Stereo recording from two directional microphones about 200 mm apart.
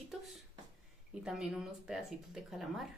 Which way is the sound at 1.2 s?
5° right (ahead or behind).